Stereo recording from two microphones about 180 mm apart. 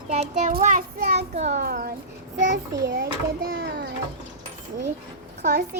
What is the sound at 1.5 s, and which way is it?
A child's voice, 55° right (ahead or behind).